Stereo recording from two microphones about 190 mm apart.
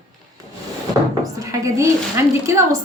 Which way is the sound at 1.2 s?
15° right (ahead or behind).